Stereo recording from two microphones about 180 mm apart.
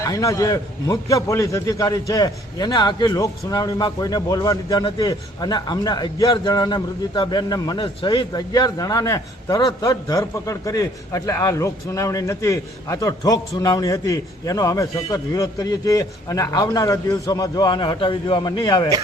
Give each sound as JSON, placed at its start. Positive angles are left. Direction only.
{"t": 0.0, "sound": "a man's voice", "side_deg": 20}